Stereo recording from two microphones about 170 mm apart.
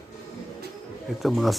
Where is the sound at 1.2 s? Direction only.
Centre (ahead or behind).